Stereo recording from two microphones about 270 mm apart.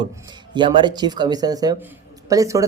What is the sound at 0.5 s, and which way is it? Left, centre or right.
Speech, centre.